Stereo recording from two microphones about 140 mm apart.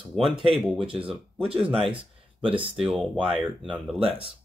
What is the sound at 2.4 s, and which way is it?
Speech, 40° right (ahead or behind).